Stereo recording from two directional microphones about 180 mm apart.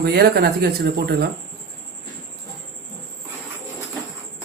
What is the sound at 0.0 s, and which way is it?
Speech, 65° right (ahead or behind).